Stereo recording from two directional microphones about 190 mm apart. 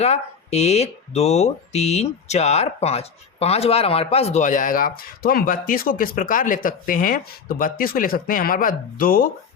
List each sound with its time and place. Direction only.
0.0 s speech: 35° left (ahead or behind)